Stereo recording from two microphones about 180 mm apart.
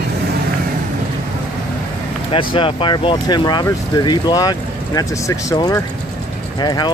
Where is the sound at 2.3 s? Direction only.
30° left (ahead or behind).